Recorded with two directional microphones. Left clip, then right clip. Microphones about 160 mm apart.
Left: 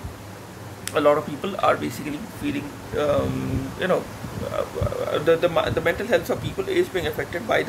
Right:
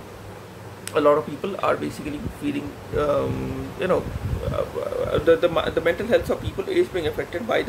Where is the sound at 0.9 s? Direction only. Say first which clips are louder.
Right 1 dB; 5° right (ahead or behind).